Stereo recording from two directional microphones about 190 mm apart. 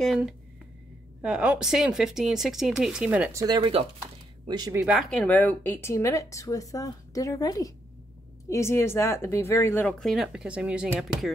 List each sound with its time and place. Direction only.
0.0 s speech: centre (ahead or behind)
3.4 s speech: 25° right (ahead or behind)
4.0 s a sound: 20° right (ahead or behind)
5.1 s speech: 10° left (ahead or behind)